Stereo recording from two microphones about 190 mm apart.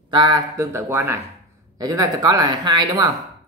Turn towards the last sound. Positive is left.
turn(degrees=-20)  # may be behind; listen again after turning